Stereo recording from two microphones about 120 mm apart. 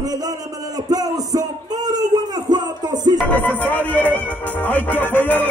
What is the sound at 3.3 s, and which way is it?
Music, 15° left (ahead or behind).